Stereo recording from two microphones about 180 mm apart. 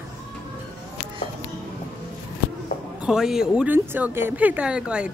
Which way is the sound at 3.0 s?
5° right (ahead or behind).